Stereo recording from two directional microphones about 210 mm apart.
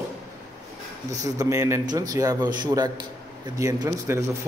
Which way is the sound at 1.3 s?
15° right (ahead or behind).